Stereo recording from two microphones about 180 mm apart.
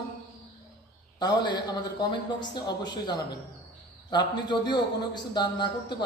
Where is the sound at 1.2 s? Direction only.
25° left (ahead or behind).